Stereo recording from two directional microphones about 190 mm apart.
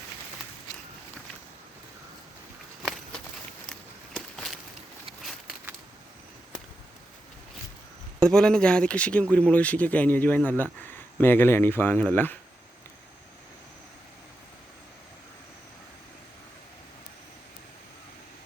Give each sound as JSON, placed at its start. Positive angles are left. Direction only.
{"t": 3.7, "sound": "walk", "side_deg": 0}
{"t": 5.2, "sound": "a sound", "side_deg": -5}
{"t": 8.2, "sound": "speech", "side_deg": 5}